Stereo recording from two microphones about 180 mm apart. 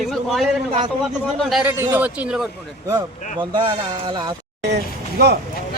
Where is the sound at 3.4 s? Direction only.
25° right (ahead or behind).